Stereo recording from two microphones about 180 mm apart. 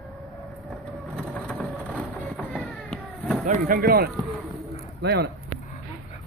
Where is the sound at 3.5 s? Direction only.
55° right (ahead or behind).